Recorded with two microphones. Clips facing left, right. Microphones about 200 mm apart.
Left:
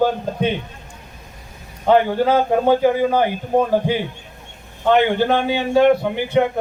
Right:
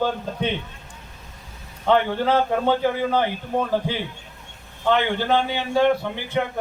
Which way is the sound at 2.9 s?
45° left (ahead or behind).